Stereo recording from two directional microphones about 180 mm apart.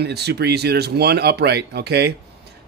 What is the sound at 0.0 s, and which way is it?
Speech, 65° right (ahead or behind).